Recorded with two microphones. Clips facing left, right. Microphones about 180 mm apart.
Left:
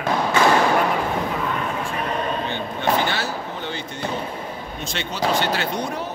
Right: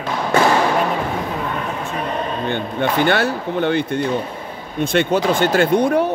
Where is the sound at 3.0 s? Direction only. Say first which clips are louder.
Right 8 dB; 60° right (ahead or behind).